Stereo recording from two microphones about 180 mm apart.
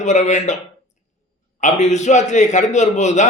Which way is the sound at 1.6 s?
40° left (ahead or behind).